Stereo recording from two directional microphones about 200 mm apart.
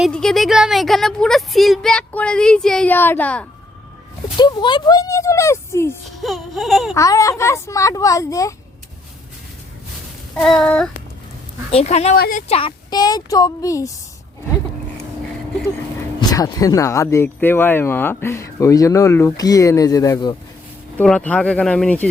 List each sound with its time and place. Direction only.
0.0 s a woman's voice: 5° left (ahead or behind)
4.4 s speech: 20° left (ahead or behind)
6.1 s a woman's voice: centre (ahead or behind)
6.9 s speech: 15° left (ahead or behind)
10.3 s a woman's voice: 5° left (ahead or behind)
11.7 s speech: 30° left (ahead or behind)
12.1 s speech: 50° left (ahead or behind)
12.5 s a woman's voice: 25° left (ahead or behind)
16.3 s speech: 15° left (ahead or behind)
21.0 s speech: 5° left (ahead or behind)